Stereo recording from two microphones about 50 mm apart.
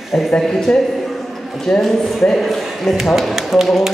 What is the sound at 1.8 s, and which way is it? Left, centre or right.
Speech, centre.